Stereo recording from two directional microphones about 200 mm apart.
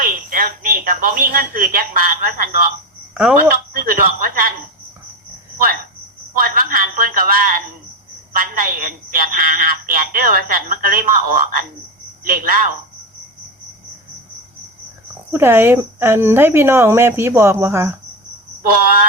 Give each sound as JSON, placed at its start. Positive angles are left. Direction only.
{"t": 0.0, "sound": "a woman's voice", "side_deg": -45}
{"t": 3.2, "sound": "speech", "side_deg": -5}
{"t": 3.5, "sound": "speech", "side_deg": -45}
{"t": 6.3, "sound": "a sound", "side_deg": -45}
{"t": 8.4, "sound": "a woman's voice", "side_deg": -45}
{"t": 15.3, "sound": "speech", "side_deg": -10}